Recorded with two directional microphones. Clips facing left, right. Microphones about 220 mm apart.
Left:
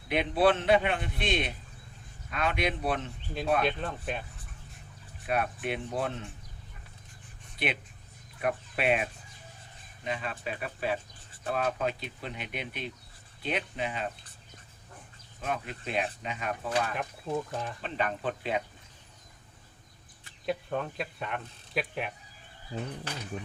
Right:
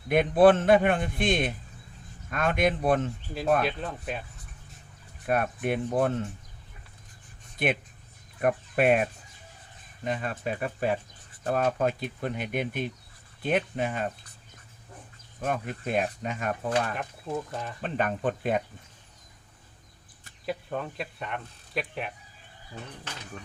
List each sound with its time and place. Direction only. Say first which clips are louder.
0.1 s speech: right 6 dB; 50° right (ahead or behind)
3.6 s speech: even; centre (ahead or behind)
5.2 s speech: right 4 dB; 45° right (ahead or behind)
7.6 s speech: right 5 dB; 50° right (ahead or behind)
15.4 s speech: right 4 dB; 50° right (ahead or behind)
16.9 s speech: even; centre (ahead or behind)
17.7 s speech: right 6 dB; 50° right (ahead or behind)
20.4 s speech: left 1 dB; centre (ahead or behind)
22.7 s speech: left 6 dB; 25° left (ahead or behind)